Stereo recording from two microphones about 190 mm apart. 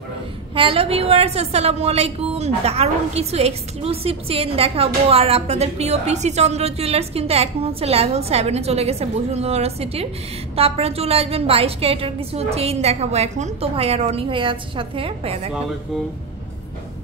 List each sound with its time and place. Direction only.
0.6 s a woman's voice: 30° right (ahead or behind)